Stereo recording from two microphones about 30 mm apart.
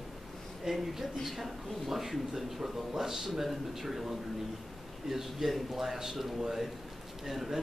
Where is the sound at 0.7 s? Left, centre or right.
Centre.